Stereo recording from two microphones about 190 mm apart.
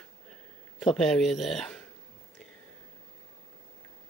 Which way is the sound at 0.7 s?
Centre (ahead or behind).